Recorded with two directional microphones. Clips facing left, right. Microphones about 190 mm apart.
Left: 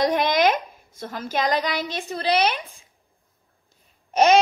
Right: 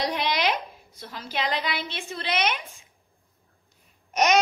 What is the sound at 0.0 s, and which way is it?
A woman's voice, 50° left (ahead or behind).